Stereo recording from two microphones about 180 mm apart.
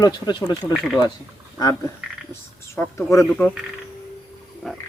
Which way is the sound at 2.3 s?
15° left (ahead or behind).